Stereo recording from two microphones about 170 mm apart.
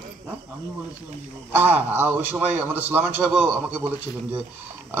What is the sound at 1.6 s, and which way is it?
A man's voice, 10° right (ahead or behind).